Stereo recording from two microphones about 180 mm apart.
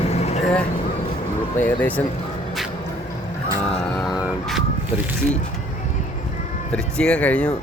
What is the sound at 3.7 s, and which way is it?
Vehicle, centre (ahead or behind).